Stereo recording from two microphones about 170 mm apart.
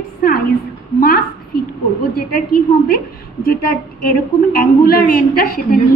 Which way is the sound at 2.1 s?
65° left (ahead or behind).